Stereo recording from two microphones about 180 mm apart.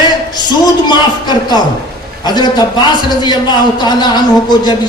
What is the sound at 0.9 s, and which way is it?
A man's voice, 25° left (ahead or behind).